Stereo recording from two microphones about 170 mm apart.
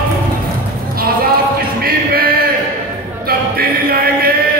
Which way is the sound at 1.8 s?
60° right (ahead or behind).